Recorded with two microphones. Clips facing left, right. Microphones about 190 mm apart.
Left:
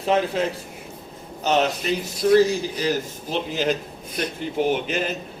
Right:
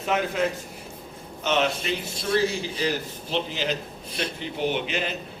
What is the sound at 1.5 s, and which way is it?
Speech, 40° left (ahead or behind).